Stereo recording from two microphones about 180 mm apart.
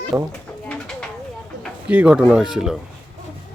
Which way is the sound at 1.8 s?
5° right (ahead or behind).